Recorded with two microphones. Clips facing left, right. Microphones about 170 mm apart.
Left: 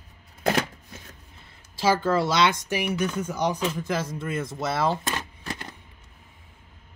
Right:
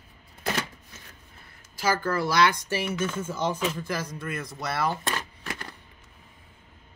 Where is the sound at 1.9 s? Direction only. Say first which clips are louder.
Left 2 dB; 20° left (ahead or behind).